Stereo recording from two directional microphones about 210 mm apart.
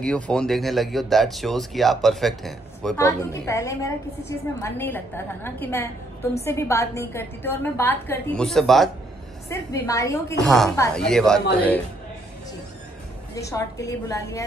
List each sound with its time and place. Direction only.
0.0 s speech: 5° left (ahead or behind)
3.0 s a woman's voice: 15° left (ahead or behind)
9.5 s a woman's voice: 15° left (ahead or behind)
10.4 s a woman's voice: centre (ahead or behind)
13.3 s a woman's voice: 15° left (ahead or behind)